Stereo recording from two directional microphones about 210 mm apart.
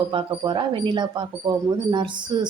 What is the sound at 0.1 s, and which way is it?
Speech, 25° right (ahead or behind).